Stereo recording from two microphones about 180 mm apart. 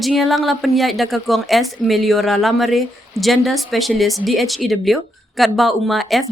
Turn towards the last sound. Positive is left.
turn(degrees=0)  # may be behind; listen again after turning